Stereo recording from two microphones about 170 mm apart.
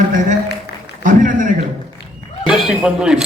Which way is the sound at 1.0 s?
50° right (ahead or behind).